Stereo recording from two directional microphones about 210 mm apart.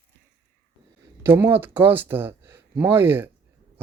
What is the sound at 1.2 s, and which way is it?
Speech, 10° right (ahead or behind).